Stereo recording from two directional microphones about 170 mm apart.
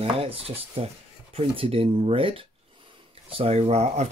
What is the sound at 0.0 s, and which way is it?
Speech, 35° right (ahead or behind).